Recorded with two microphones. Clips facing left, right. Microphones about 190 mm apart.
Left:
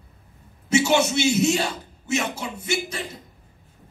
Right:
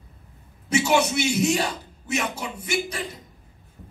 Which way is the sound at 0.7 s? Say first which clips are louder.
Left 1 dB; 25° left (ahead or behind).